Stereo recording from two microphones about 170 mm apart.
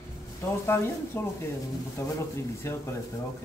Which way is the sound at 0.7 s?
10° left (ahead or behind).